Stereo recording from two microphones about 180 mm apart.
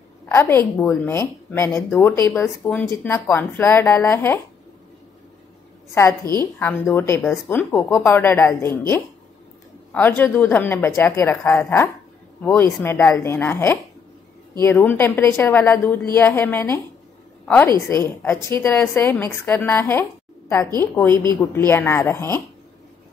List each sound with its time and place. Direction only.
0.3 s a woman's voice: 15° left (ahead or behind)
6.2 s a woman's voice: 20° right (ahead or behind)
6.6 s a woman's voice: 10° left (ahead or behind)
14.8 s a woman's voice: 10° left (ahead or behind)